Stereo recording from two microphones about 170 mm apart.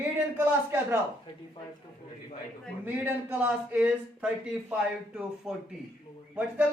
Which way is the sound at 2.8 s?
10° right (ahead or behind).